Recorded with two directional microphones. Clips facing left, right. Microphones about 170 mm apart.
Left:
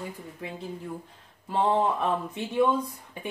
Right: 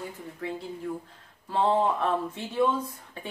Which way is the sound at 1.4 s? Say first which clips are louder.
Even; 15° left (ahead or behind).